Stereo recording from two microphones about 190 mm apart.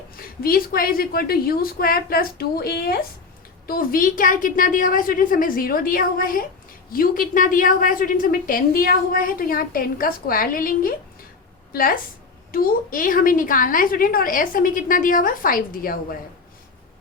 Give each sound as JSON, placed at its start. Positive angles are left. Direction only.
{"t": 0.2, "sound": "a woman's voice", "side_deg": 50}